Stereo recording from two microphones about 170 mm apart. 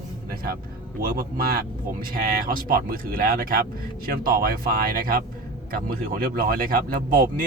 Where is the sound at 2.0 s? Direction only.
55° right (ahead or behind).